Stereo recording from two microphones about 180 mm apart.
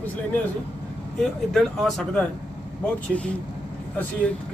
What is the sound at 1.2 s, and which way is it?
Speech, centre (ahead or behind).